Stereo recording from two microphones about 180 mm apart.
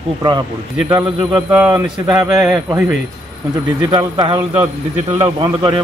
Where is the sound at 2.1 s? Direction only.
20° right (ahead or behind).